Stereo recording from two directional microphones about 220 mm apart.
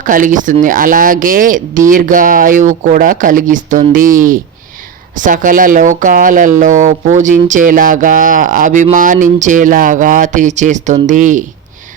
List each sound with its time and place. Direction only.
0.0 s speech: 35° right (ahead or behind)